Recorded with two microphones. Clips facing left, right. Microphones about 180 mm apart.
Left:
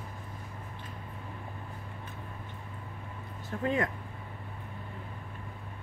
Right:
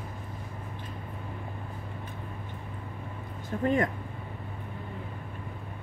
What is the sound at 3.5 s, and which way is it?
Speech, 20° right (ahead or behind).